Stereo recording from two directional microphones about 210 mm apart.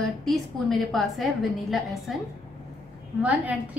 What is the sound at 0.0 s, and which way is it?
A woman's voice, centre (ahead or behind).